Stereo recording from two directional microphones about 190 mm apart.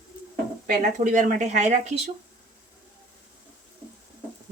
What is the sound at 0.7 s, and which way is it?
Speech, 45° right (ahead or behind).